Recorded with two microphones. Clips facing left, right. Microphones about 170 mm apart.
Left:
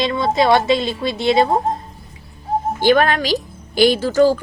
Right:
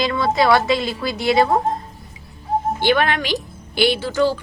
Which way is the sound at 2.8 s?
40° left (ahead or behind).